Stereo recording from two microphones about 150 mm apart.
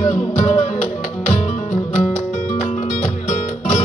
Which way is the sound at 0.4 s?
50° left (ahead or behind).